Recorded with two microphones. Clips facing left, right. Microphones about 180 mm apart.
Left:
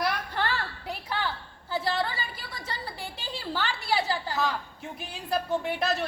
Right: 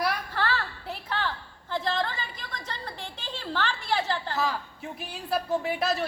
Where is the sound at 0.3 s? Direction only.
20° left (ahead or behind).